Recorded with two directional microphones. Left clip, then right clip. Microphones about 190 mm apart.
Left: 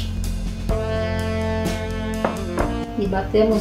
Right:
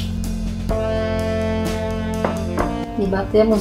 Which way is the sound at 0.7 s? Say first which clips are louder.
Right 3 dB; centre (ahead or behind).